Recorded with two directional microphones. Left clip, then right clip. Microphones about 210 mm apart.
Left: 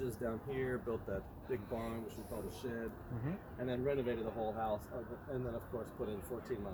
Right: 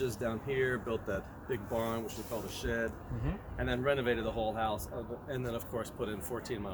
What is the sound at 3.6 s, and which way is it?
Speech, 25° right (ahead or behind).